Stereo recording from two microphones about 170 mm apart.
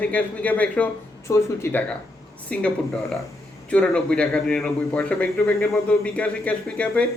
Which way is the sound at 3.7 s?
5° left (ahead or behind).